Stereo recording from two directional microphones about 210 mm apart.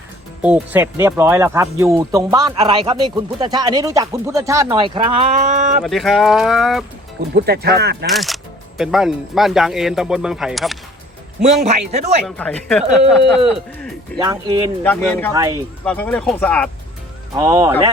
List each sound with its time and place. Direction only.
0.4 s speech: 5° right (ahead or behind); by 5.8 s 35° right (ahead or behind)
5.8 s speech: centre (ahead or behind)
7.3 s speech: 50° right (ahead or behind)
8.0 s speech: centre (ahead or behind)
11.4 s speech: 35° right (ahead or behind)
12.2 s speech: 5° left (ahead or behind)
14.2 s speech: 20° right (ahead or behind)
14.8 s speech: 5° left (ahead or behind)
15.3 s speech: 15° right (ahead or behind)
15.8 s speech: 5° left (ahead or behind)
17.3 s speech: 15° right (ahead or behind)